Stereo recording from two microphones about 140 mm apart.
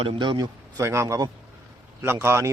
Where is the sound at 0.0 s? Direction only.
40° right (ahead or behind).